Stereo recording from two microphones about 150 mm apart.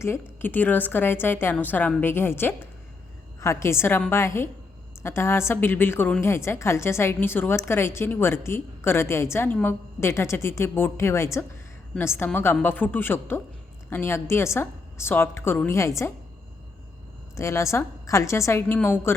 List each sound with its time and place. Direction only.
0.0 s a woman's voice: 15° left (ahead or behind)
17.3 s a woman's voice: 20° left (ahead or behind)